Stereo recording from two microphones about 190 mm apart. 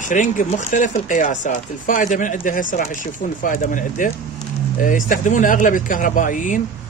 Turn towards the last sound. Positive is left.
turn(degrees=45)  # may be behind; listen again after turning